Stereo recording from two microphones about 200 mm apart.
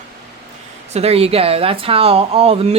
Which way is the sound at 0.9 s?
30° right (ahead or behind).